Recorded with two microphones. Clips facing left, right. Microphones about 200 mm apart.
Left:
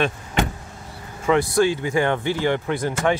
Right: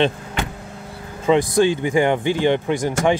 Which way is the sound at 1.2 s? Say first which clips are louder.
Right 2 dB; 15° right (ahead or behind).